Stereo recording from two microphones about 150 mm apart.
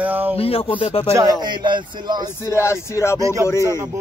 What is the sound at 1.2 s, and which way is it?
Speech, 30° right (ahead or behind).